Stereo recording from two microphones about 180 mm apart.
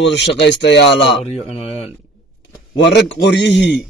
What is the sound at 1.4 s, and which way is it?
Speech, 35° left (ahead or behind).